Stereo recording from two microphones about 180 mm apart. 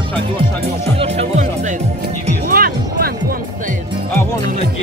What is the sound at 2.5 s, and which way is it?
Music, 55° right (ahead or behind).